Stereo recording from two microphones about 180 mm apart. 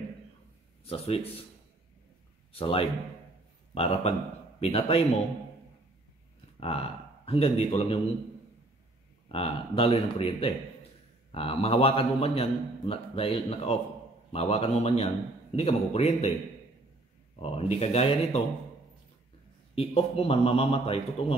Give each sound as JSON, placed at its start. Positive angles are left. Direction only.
{"t": 0.8, "sound": "a man's voice", "side_deg": 30}
{"t": 2.5, "sound": "a man's voice", "side_deg": 30}
{"t": 6.6, "sound": "a man's voice", "side_deg": 35}
{"t": 9.3, "sound": "a man's voice", "side_deg": 30}
{"t": 17.4, "sound": "a man's voice", "side_deg": 35}
{"t": 19.7, "sound": "a man's voice", "side_deg": 35}